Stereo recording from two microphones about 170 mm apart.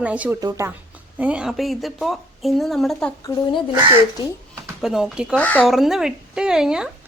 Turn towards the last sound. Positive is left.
turn(degrees=-5)  # may be behind; listen again after turning